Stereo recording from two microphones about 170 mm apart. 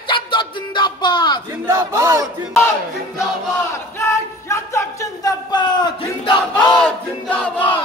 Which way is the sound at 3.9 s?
15° left (ahead or behind).